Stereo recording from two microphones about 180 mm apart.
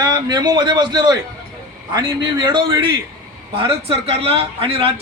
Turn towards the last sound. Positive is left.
turn(degrees=-30)  # may be behind; listen again after turning